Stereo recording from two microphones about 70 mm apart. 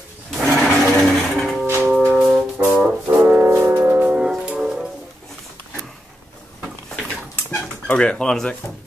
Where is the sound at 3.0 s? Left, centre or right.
Right.